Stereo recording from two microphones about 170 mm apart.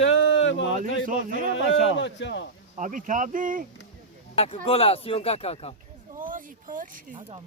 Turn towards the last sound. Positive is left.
turn(degrees=-50)  # may be behind; listen again after turning